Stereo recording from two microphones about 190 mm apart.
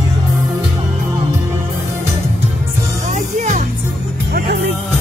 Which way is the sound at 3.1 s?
40° right (ahead or behind).